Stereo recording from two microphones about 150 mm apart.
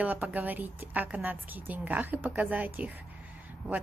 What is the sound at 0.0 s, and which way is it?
Speech, 10° right (ahead or behind).